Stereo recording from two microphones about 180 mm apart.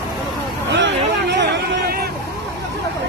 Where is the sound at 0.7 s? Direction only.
75° right (ahead or behind).